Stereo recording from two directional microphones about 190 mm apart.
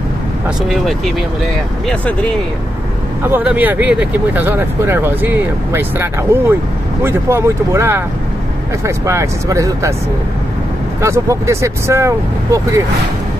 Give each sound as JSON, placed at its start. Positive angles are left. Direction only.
{"t": 0.7, "sound": "speech", "side_deg": 0}
{"t": 3.3, "sound": "speech", "side_deg": -10}
{"t": 11.0, "sound": "speech", "side_deg": -15}